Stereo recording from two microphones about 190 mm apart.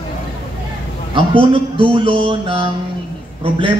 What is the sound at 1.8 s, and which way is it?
A man's voice, 25° right (ahead or behind).